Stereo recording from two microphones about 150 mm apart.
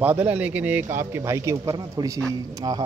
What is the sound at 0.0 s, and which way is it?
A man's voice, 10° right (ahead or behind).